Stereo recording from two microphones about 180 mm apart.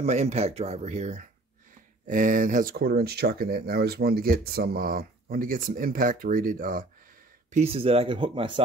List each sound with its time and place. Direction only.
0.0 s speech: 35° right (ahead or behind)
2.7 s speech: 65° right (ahead or behind)
7.5 s speech: 35° right (ahead or behind)